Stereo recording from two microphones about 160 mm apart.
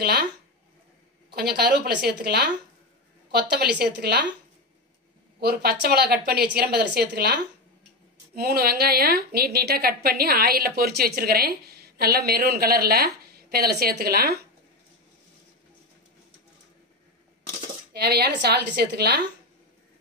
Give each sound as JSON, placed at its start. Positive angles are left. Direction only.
{"t": 0.0, "sound": "a woman's voice", "side_deg": -75}
{"t": 1.3, "sound": "speech", "side_deg": -80}
{"t": 3.3, "sound": "speech", "side_deg": -80}
{"t": 5.4, "sound": "speech", "side_deg": -80}
{"t": 8.4, "sound": "a woman's voice", "side_deg": -70}
{"t": 17.9, "sound": "a woman's voice", "side_deg": -90}